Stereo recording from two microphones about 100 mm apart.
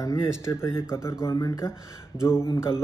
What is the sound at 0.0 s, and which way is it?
Speech, 30° left (ahead or behind).